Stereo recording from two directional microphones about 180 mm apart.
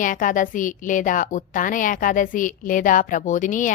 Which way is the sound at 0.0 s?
50° left (ahead or behind).